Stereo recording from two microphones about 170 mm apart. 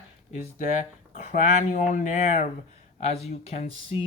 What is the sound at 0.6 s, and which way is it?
Speech, 45° left (ahead or behind).